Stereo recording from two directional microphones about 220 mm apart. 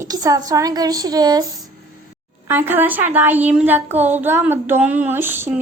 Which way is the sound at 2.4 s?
10° right (ahead or behind).